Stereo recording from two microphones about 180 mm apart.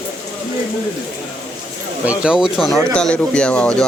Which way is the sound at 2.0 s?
5° right (ahead or behind).